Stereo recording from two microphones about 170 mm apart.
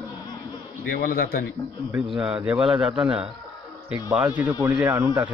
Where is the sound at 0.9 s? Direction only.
55° left (ahead or behind).